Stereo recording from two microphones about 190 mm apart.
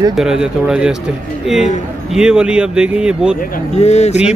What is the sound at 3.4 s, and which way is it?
Speech, 35° left (ahead or behind).